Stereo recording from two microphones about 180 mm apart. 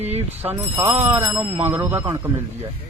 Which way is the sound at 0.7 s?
10° right (ahead or behind).